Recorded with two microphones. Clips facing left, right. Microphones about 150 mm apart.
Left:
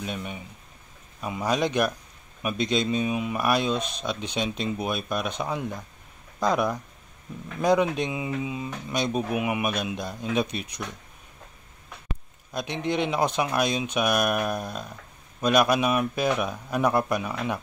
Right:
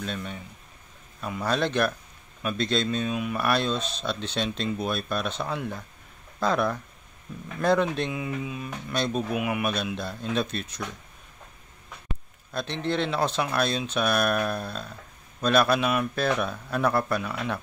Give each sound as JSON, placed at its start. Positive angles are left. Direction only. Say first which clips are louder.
{"t": 0.0, "sound": "speech", "louder": "even", "side_deg": 15}
{"t": 12.5, "sound": "speech", "louder": "left 1 dB", "side_deg": 15}